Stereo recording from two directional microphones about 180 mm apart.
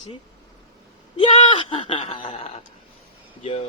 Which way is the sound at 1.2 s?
30° left (ahead or behind).